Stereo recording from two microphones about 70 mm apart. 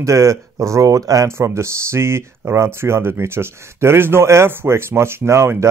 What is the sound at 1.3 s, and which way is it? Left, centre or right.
Speech, right.